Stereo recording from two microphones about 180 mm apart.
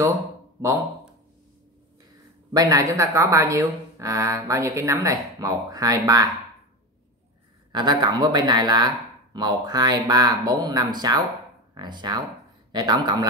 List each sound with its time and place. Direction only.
2.5 s speech: 20° right (ahead or behind)
7.7 s speech: 25° right (ahead or behind)